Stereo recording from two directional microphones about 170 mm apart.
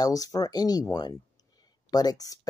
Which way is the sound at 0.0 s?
20° left (ahead or behind).